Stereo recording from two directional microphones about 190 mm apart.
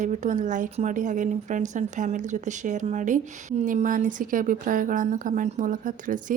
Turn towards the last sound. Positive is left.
turn(degrees=-45)  # may be behind; listen again after turning